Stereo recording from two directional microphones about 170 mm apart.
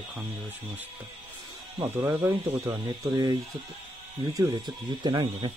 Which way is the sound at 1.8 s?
15° right (ahead or behind).